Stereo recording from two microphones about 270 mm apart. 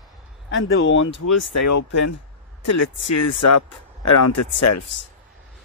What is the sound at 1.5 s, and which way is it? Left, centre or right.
Speech, left.